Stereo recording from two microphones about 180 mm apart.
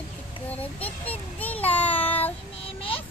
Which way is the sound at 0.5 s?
10° left (ahead or behind).